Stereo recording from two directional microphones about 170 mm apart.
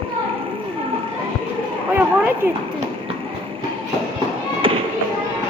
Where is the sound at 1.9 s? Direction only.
10° right (ahead or behind).